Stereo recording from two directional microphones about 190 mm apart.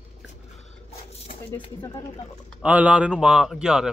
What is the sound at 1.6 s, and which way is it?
Speech, 20° left (ahead or behind).